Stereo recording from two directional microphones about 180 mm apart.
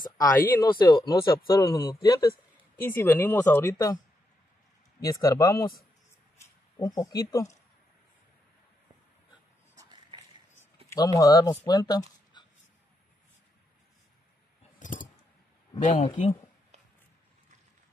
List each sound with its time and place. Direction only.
0.2 s speech: 20° left (ahead or behind)
5.0 s speech: 20° left (ahead or behind)
10.1 s a sound: 25° right (ahead or behind)
10.9 s speech: 20° left (ahead or behind)
14.8 s scissors: 45° left (ahead or behind)
15.8 s speech: 35° left (ahead or behind)